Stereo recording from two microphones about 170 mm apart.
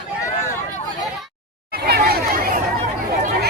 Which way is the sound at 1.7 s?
65° right (ahead or behind).